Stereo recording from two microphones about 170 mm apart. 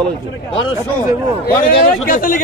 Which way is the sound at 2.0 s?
55° left (ahead or behind).